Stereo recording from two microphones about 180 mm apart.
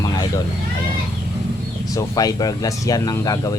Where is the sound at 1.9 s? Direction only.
20° left (ahead or behind).